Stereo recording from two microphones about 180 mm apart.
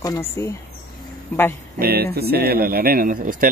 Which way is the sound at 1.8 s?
60° right (ahead or behind).